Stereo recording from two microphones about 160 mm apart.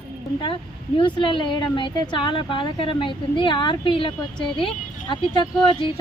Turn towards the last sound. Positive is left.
turn(degrees=30)  # may be behind; listen again after turning